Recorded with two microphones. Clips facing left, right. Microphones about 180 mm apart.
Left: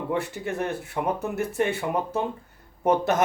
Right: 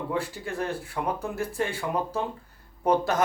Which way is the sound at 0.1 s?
20° left (ahead or behind).